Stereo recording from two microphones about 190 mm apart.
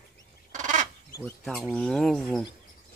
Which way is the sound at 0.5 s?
40° right (ahead or behind).